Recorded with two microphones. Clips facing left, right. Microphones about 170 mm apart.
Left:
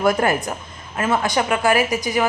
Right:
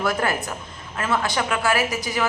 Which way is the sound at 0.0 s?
15° left (ahead or behind).